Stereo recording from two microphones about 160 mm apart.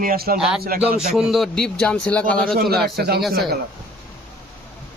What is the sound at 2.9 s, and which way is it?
Speech, 90° right.